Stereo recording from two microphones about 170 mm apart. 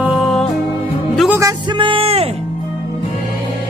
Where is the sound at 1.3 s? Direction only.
20° right (ahead or behind); by 2.3 s 35° right (ahead or behind).